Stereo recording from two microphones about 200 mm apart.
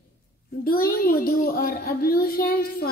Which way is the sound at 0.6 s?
50° left (ahead or behind).